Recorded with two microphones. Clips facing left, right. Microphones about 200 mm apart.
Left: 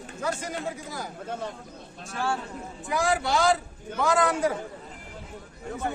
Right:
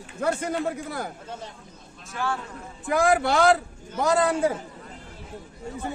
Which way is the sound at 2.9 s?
55° right (ahead or behind).